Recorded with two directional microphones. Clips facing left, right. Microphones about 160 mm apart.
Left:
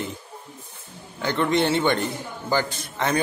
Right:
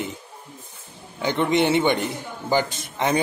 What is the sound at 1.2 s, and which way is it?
Speech, 15° right (ahead or behind).